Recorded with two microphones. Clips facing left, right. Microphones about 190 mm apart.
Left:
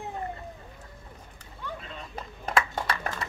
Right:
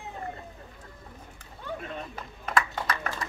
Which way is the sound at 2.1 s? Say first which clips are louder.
Left 2 dB; 30° left (ahead or behind).